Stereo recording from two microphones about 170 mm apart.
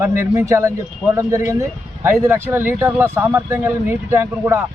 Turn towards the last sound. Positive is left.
turn(degrees=-15)  # may be behind; listen again after turning